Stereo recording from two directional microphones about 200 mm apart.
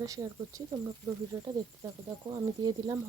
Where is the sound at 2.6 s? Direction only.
20° right (ahead or behind).